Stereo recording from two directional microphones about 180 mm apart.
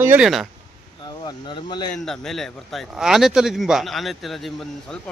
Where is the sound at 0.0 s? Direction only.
10° right (ahead or behind).